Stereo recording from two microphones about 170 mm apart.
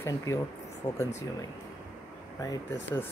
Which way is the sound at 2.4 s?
15° left (ahead or behind).